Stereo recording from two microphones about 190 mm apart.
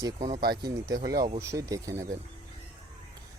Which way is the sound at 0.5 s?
20° right (ahead or behind).